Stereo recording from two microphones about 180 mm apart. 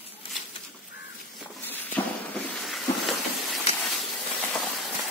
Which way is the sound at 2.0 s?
10° left (ahead or behind).